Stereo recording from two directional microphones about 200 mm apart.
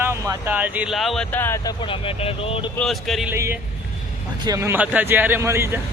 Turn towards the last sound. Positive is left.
turn(degrees=-10)  # may be behind; listen again after turning